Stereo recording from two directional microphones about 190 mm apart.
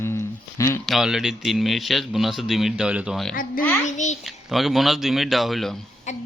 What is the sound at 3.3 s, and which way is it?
Speech, 45° left (ahead or behind).